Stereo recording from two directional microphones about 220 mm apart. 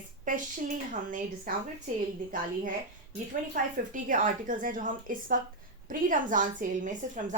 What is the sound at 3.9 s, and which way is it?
A woman's voice, 35° right (ahead or behind).